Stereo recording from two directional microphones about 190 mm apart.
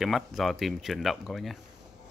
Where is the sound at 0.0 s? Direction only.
Centre (ahead or behind).